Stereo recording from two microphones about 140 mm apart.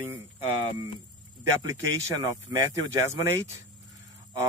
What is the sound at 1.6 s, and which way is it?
Speech, 25° right (ahead or behind).